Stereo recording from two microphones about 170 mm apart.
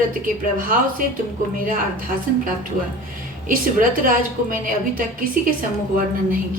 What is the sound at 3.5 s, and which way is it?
A woman's voice, 55° right (ahead or behind).